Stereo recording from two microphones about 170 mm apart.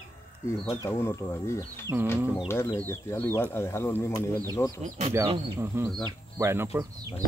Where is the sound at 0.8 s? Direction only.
15° left (ahead or behind).